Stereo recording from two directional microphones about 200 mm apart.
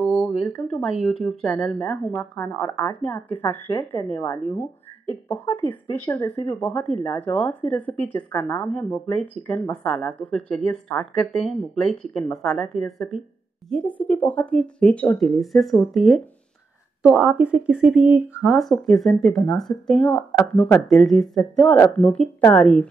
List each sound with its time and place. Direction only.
0.0 s a sound: centre (ahead or behind)
0.7 s speech: centre (ahead or behind); by 4.6 s 20° left (ahead or behind)
5.7 s speech: 10° left (ahead or behind)